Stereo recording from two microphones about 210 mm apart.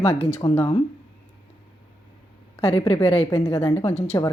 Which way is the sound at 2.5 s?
30° left (ahead or behind).